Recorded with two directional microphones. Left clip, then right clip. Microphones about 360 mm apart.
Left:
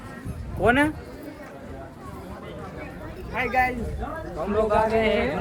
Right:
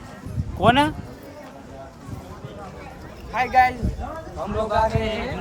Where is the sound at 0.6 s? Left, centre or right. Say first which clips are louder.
Right 3 dB; centre.